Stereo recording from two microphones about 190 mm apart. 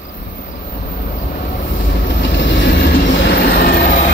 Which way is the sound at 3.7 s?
40° left (ahead or behind).